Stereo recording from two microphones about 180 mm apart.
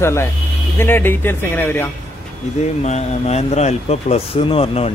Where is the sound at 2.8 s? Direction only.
40° left (ahead or behind).